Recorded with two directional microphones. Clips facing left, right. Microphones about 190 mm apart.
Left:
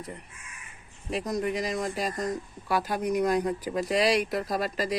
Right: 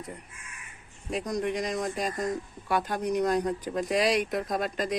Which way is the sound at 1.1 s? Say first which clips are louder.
Left 1 dB; centre (ahead or behind).